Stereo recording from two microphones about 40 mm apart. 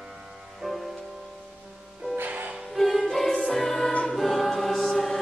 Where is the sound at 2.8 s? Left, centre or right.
Centre.